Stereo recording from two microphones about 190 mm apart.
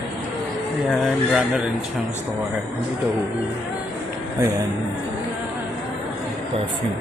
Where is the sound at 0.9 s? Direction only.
Centre (ahead or behind).